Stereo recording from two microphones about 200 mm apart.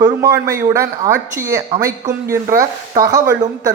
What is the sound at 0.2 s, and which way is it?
A man's voice, 15° right (ahead or behind).